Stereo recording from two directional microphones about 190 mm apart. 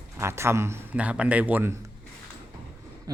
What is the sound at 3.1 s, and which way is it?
Speech, 20° right (ahead or behind).